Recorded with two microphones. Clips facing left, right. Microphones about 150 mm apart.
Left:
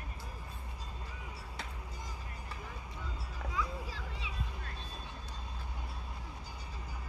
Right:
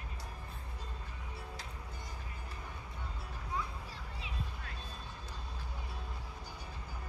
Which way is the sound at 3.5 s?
90° left.